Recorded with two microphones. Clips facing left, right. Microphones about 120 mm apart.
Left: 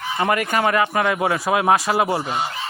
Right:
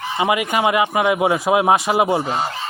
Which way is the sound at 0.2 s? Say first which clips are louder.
Right 2 dB; 10° right (ahead or behind).